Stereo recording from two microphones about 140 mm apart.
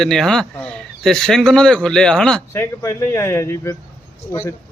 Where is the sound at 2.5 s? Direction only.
20° left (ahead or behind).